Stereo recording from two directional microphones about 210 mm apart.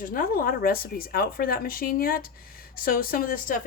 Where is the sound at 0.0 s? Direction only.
40° left (ahead or behind).